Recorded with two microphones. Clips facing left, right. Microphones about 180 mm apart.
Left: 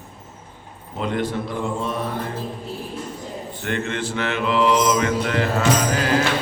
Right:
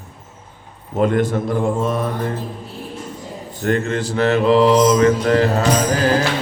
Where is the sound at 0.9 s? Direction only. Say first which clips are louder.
Right 7 dB; 45° right (ahead or behind).